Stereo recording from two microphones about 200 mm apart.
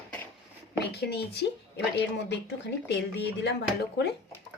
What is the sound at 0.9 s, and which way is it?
A woman's voice, 55° left (ahead or behind).